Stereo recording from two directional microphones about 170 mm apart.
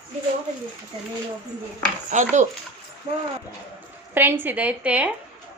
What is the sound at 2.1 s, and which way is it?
Speech, 45° right (ahead or behind).